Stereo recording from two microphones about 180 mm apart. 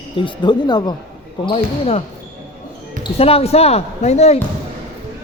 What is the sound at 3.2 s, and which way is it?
Speech, 35° left (ahead or behind).